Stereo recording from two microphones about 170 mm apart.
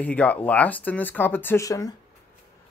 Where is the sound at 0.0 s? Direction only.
10° left (ahead or behind).